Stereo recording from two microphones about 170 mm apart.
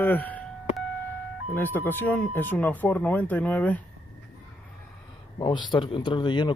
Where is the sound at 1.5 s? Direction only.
10° left (ahead or behind).